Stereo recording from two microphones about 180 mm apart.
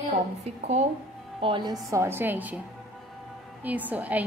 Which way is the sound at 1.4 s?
25° right (ahead or behind).